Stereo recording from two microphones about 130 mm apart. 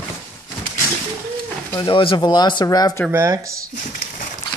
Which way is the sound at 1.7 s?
35° left (ahead or behind).